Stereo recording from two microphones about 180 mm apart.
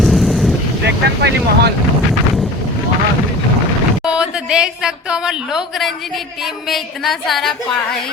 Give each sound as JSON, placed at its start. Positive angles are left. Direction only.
{"t": 0.0, "sound": "vehicle", "side_deg": 0}
{"t": 0.9, "sound": "speech", "side_deg": -70}
{"t": 4.0, "sound": "a woman's voice", "side_deg": -5}